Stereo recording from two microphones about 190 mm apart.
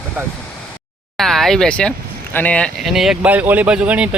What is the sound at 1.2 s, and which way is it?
Speech, centre (ahead or behind).